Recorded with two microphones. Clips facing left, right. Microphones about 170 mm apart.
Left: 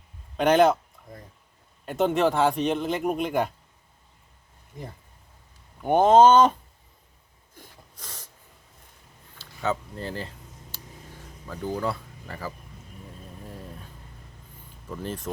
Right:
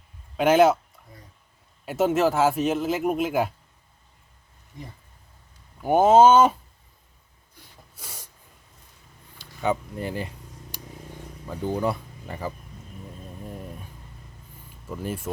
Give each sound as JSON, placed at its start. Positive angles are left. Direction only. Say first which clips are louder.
{"t": 0.3, "sound": "speech", "louder": "right 1 dB", "side_deg": -5}
{"t": 1.8, "sound": "speech", "louder": "right 1 dB", "side_deg": -5}
{"t": 5.8, "sound": "speech", "louder": "right 1 dB", "side_deg": -5}
{"t": 7.9, "sound": "snort", "louder": "right 1 dB", "side_deg": -10}
{"t": 9.4, "sound": "a sound", "louder": "right 3 dB", "side_deg": -15}
{"t": 11.4, "sound": "speech", "louder": "right 3 dB", "side_deg": -20}
{"t": 13.4, "sound": "a sound", "louder": "right 4 dB", "side_deg": -15}
{"t": 14.8, "sound": "speech", "louder": "right 2 dB", "side_deg": -10}